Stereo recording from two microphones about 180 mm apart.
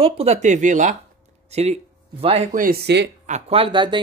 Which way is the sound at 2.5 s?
55° right (ahead or behind).